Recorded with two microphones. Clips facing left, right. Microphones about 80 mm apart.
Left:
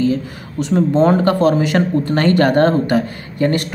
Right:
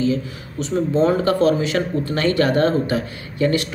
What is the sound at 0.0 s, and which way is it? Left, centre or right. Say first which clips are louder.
Speech: left 3 dB; left.